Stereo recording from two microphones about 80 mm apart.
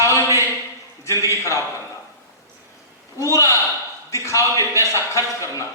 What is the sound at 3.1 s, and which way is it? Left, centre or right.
A man's voice, left.